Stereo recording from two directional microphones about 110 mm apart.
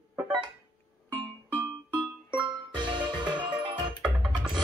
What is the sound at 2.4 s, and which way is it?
Music, 45° right (ahead or behind).